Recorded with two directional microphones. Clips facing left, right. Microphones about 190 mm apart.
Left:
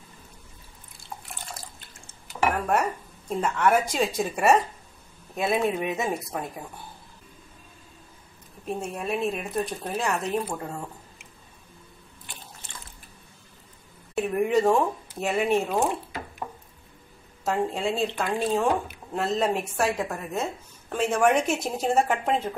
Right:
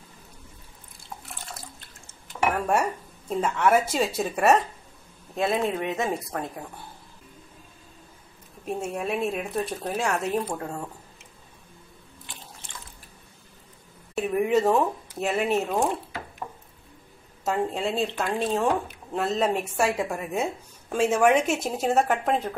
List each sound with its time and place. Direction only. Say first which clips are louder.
2.5 s speech: right 1 dB; 10° right (ahead or behind)
8.6 s speech: right 1 dB; 5° right (ahead or behind)
14.1 s speech: even; centre (ahead or behind)
17.5 s speech: even; centre (ahead or behind)